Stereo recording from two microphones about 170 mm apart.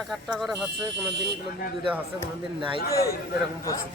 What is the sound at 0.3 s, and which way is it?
Speech, centre (ahead or behind).